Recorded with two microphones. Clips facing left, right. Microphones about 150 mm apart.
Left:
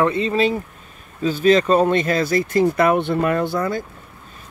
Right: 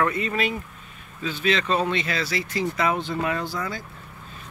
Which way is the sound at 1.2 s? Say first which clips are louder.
Left 9 dB; 40° left (ahead or behind).